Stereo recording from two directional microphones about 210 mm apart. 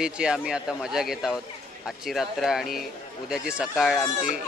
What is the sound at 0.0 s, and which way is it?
A man's voice, 5° right (ahead or behind).